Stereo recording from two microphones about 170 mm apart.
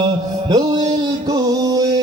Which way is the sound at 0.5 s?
25° right (ahead or behind).